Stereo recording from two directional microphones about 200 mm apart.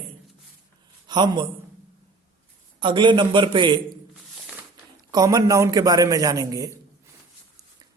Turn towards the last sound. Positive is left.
turn(degrees=-15)  # may be behind; listen again after turning